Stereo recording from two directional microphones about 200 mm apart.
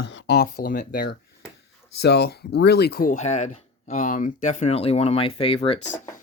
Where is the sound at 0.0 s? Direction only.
65° left (ahead or behind).